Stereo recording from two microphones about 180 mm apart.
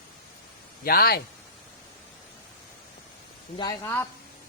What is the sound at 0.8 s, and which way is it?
Speech, 55° left (ahead or behind).